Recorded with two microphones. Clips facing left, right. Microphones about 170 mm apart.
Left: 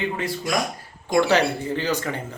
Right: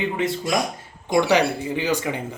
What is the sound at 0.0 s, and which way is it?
Speech, 20° right (ahead or behind).